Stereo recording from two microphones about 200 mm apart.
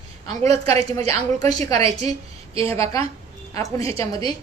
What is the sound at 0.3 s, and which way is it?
A woman's voice, 30° right (ahead or behind).